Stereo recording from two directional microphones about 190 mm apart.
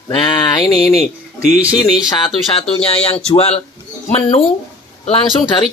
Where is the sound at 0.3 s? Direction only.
20° left (ahead or behind).